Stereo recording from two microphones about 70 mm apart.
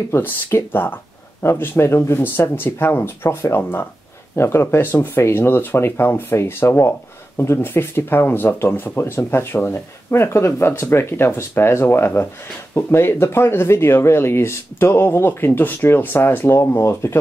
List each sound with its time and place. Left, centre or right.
0.1 s speech: left